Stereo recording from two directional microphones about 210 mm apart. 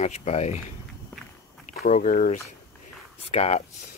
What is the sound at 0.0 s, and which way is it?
Speech, 30° left (ahead or behind).